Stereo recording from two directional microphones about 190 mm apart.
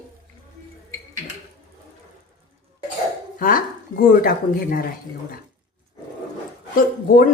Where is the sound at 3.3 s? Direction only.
45° left (ahead or behind).